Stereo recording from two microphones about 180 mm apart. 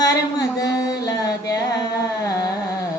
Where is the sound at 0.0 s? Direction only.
20° left (ahead or behind).